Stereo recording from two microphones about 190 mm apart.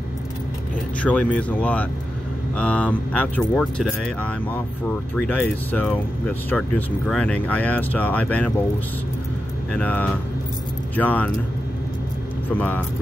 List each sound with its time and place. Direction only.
1.0 s speech: 5° left (ahead or behind)
9.8 s speech: 10° left (ahead or behind)
12.4 s speech: 10° left (ahead or behind)